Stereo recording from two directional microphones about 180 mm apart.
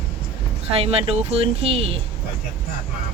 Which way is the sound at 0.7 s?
35° right (ahead or behind).